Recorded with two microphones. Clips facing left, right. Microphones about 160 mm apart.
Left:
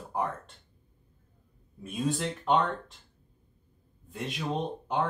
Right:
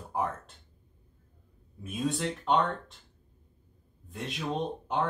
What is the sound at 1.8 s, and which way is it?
Speech, centre (ahead or behind).